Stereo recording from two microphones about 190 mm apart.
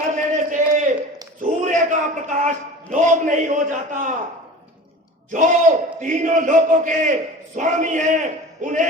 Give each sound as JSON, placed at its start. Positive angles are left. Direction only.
{"t": 0.1, "sound": "a sound", "side_deg": -40}
{"t": 1.4, "sound": "a man's voice", "side_deg": -40}
{"t": 5.3, "sound": "a man's voice", "side_deg": -40}